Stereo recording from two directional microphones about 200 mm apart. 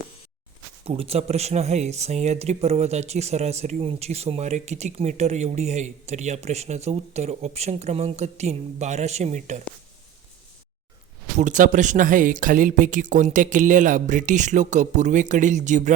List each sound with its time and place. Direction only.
0.9 s speech: 30° right (ahead or behind)
11.3 s speech: 40° right (ahead or behind)